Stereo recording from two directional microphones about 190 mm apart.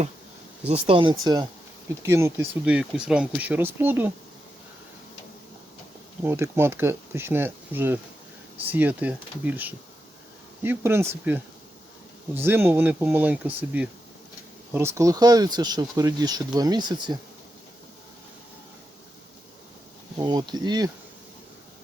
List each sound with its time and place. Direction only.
0.7 s speech: 30° right (ahead or behind); by 4.1 s 10° right (ahead or behind)
6.2 s speech: 15° right (ahead or behind)
12.5 s speech: 10° right (ahead or behind)
20.1 s speech: 20° right (ahead or behind)